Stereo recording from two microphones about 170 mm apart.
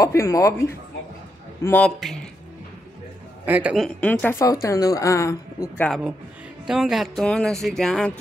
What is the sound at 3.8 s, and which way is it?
Speech, 10° left (ahead or behind).